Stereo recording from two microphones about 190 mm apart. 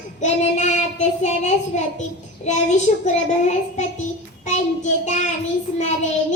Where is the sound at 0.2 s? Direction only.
40° left (ahead or behind).